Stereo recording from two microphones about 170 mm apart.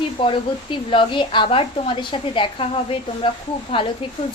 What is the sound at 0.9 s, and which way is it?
A woman's voice, 30° left (ahead or behind).